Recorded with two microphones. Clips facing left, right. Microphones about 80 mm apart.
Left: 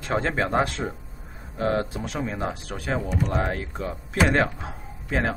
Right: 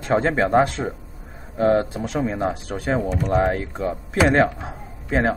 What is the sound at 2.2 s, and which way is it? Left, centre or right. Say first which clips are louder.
Speech: right 6 dB; centre.